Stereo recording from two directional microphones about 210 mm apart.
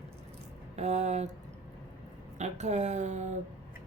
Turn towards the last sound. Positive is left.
turn(degrees=-35)  # may be behind; listen again after turning